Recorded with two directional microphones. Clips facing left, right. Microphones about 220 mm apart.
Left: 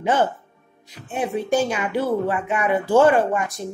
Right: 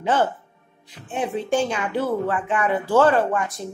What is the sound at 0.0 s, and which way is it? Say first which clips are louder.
Speech: left 1 dB; 10° left (ahead or behind).